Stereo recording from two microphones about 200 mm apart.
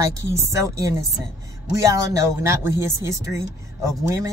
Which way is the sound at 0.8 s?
15° right (ahead or behind).